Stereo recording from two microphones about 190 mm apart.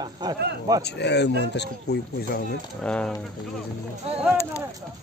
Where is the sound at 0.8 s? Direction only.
65° left (ahead or behind).